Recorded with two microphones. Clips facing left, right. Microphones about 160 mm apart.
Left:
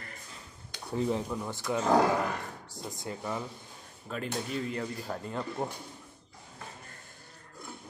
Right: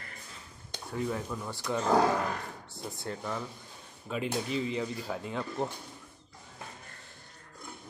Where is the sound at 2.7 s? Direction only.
40° left (ahead or behind).